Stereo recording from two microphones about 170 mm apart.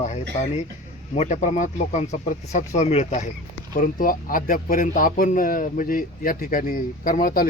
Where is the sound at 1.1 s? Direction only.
45° left (ahead or behind).